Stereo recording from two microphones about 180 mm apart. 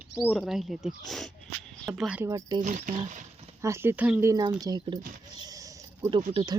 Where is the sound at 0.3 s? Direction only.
Centre (ahead or behind).